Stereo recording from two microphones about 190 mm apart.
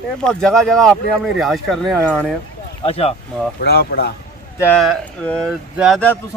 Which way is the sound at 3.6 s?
60° left (ahead or behind).